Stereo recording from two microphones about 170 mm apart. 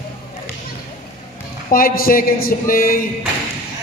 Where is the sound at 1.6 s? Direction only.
55° left (ahead or behind).